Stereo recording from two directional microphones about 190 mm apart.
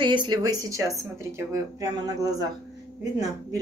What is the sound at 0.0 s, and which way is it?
Speech, 25° right (ahead or behind).